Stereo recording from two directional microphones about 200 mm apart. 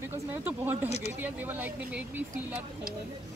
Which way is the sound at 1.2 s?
10° right (ahead or behind).